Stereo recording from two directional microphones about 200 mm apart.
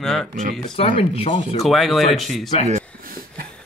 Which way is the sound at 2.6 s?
40° right (ahead or behind).